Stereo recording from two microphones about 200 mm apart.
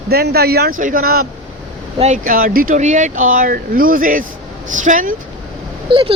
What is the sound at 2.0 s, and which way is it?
Speech, 40° right (ahead or behind).